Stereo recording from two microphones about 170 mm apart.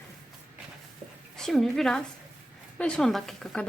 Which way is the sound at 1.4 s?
Centre (ahead or behind).